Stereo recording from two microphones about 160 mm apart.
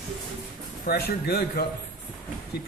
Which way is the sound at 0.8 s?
80° left.